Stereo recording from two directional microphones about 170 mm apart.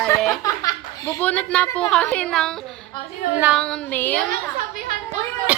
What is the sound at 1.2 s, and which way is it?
A woman's voice, 5° left (ahead or behind).